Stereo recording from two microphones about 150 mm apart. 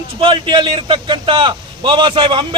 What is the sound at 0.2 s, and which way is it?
A man's voice, 35° right (ahead or behind).